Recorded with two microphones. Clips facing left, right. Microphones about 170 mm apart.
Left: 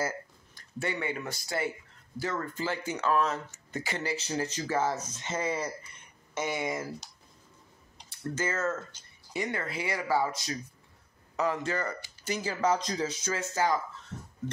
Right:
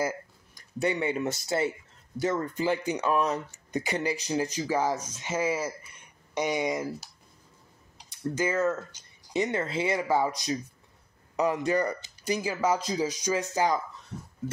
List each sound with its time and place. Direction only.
0.6 s speech: 20° right (ahead or behind)
8.1 s speech: 15° right (ahead or behind)